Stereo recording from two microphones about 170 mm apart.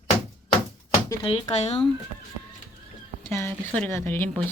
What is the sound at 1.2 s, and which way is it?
Speech, 35° left (ahead or behind).